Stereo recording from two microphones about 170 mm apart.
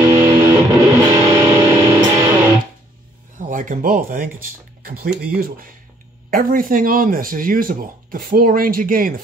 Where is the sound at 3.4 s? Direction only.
50° right (ahead or behind).